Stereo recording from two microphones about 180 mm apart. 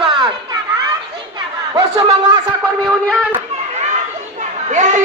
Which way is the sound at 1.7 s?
20° right (ahead or behind).